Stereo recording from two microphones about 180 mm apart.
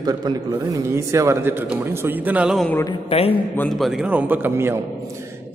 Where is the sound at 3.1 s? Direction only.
35° left (ahead or behind).